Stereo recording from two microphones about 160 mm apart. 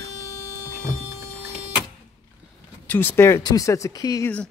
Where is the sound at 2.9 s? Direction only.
15° left (ahead or behind).